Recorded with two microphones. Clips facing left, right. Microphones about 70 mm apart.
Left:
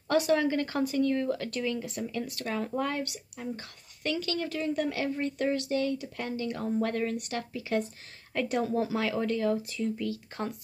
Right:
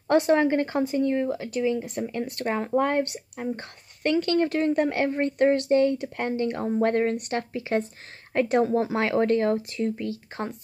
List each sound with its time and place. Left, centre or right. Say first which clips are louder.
0.1 s speech: right 5 dB; right
2.0 s speech: right 6 dB; right
9.9 s speech: right 2 dB; right